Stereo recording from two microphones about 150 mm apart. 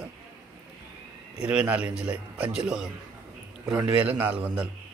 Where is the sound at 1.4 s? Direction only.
5° right (ahead or behind).